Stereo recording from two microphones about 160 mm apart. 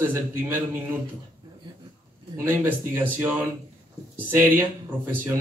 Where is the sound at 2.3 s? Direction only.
15° right (ahead or behind).